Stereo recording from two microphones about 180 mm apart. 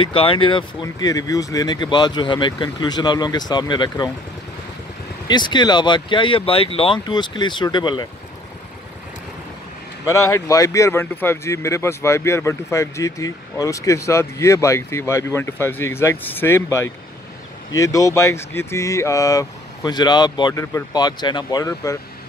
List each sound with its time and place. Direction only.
0.0 s speech: 30° left (ahead or behind)
5.3 s speech: 25° left (ahead or behind)
10.0 s speech: 15° left (ahead or behind)